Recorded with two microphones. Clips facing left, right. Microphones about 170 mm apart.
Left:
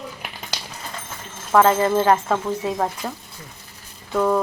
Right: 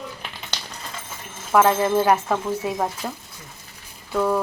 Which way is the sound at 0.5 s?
10° left (ahead or behind).